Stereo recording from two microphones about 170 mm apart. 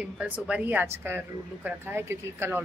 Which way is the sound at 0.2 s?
5° right (ahead or behind).